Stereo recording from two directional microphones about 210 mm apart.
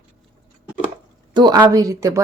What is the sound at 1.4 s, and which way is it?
Speech, 20° right (ahead or behind).